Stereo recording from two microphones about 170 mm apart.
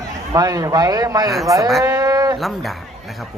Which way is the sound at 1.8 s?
20° right (ahead or behind).